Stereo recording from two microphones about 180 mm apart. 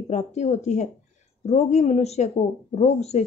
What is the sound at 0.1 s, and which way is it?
Speech, 40° left (ahead or behind).